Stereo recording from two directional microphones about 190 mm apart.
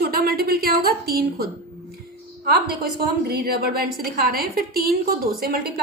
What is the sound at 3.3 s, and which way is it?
A woman's voice, 55° right (ahead or behind).